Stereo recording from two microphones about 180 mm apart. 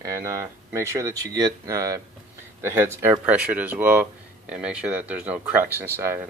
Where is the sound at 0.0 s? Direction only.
15° right (ahead or behind).